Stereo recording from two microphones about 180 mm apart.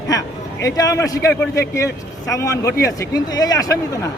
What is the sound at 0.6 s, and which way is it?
A man's voice, 20° left (ahead or behind).